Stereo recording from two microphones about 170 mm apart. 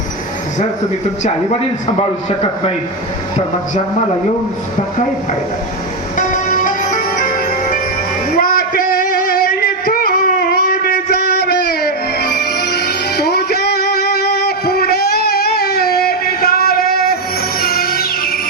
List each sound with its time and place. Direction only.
2.0 s a man's voice: 35° left (ahead or behind)
6.1 s music: 50° left (ahead or behind)
8.3 s a sound: 60° left (ahead or behind)
17.6 s music: 60° left (ahead or behind)